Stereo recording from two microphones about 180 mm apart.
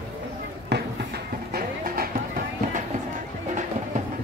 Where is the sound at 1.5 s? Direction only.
55° right (ahead or behind).